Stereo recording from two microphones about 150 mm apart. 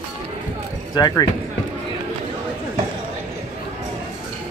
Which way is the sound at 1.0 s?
25° left (ahead or behind).